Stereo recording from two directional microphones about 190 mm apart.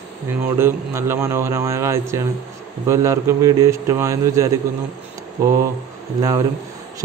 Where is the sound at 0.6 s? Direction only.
15° right (ahead or behind).